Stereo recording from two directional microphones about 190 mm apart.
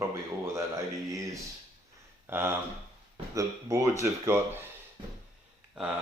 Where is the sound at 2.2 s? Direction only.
10° right (ahead or behind).